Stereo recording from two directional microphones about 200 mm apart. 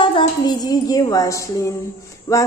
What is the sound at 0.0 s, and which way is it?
A woman's voice, 25° left (ahead or behind).